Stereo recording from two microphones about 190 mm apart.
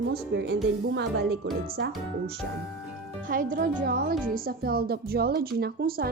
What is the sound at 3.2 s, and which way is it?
A woman's voice, 45° right (ahead or behind).